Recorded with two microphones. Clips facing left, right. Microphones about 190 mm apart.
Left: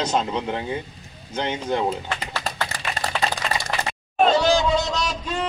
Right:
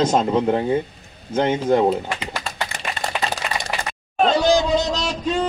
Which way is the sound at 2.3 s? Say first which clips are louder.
Even; 15° right (ahead or behind).